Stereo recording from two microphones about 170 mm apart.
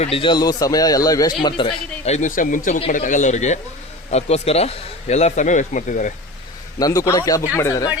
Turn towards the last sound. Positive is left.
turn(degrees=20)  # may be behind; listen again after turning